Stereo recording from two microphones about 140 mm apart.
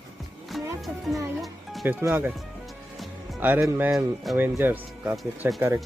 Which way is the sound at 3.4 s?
15° right (ahead or behind).